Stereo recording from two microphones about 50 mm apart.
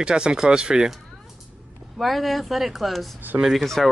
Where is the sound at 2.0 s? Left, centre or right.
Centre.